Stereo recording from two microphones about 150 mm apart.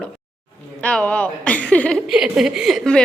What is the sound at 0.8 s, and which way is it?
A woman's voice, 10° left (ahead or behind).